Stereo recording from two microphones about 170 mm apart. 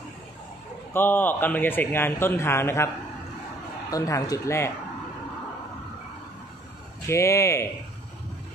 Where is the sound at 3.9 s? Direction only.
20° left (ahead or behind).